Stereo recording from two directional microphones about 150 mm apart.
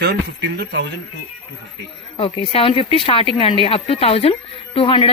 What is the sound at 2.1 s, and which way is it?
A woman's voice, 40° left (ahead or behind).